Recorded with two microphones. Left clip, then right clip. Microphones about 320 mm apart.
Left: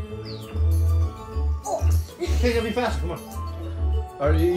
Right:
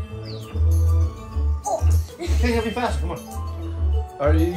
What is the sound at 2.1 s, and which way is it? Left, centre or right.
Speech, right.